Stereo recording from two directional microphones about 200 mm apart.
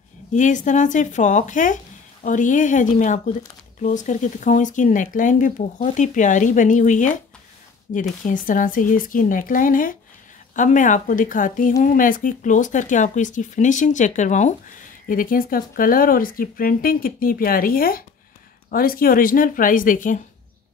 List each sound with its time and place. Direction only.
0.3 s speech: 40° left (ahead or behind)